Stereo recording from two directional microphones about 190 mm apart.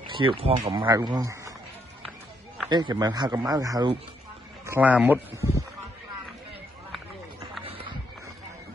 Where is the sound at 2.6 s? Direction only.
20° right (ahead or behind).